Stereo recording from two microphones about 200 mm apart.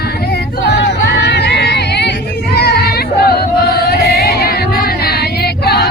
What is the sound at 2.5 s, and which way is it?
Music, 55° left (ahead or behind).